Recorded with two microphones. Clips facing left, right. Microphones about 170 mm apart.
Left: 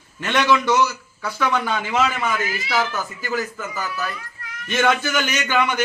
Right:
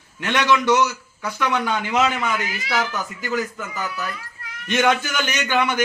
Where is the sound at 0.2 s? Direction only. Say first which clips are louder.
Left 1 dB; 15° right (ahead or behind).